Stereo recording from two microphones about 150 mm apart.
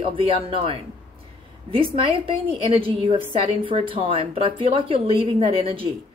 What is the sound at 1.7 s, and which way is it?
Speech, 35° right (ahead or behind).